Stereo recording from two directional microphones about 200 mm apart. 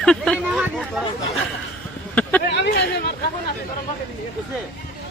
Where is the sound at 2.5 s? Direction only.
60° left (ahead or behind).